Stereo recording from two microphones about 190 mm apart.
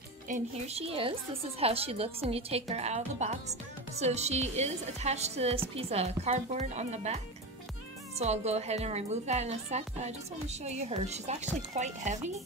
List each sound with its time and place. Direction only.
0.3 s a woman's voice: 35° right (ahead or behind)
8.2 s a woman's voice: 35° right (ahead or behind)